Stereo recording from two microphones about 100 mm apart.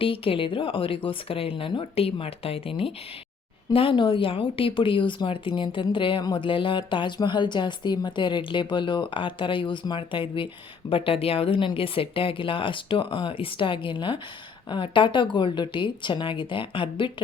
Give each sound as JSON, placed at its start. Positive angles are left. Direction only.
{"t": 0.0, "sound": "speech", "side_deg": 65}